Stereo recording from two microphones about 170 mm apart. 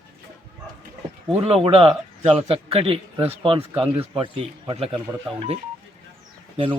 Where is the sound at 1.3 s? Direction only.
35° right (ahead or behind).